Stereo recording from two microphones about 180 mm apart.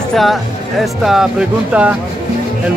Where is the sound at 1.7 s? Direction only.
5° right (ahead or behind).